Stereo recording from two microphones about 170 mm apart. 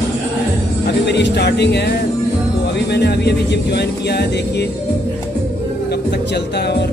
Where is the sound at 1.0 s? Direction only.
85° left.